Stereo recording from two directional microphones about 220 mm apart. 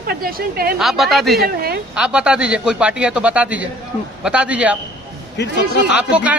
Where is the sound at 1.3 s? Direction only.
45° right (ahead or behind).